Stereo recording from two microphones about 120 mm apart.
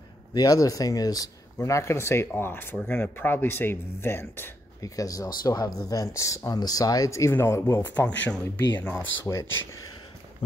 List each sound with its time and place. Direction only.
0.3 s speech: 30° left (ahead or behind); by 9.0 s 10° left (ahead or behind)
9.2 s speech: 25° left (ahead or behind)